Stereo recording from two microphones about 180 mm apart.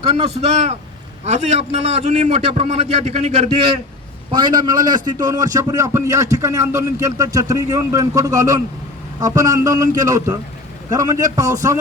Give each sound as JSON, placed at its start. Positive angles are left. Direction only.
{"t": 0.2, "sound": "a man's voice", "side_deg": -35}
{"t": 4.3, "sound": "a man's voice", "side_deg": -25}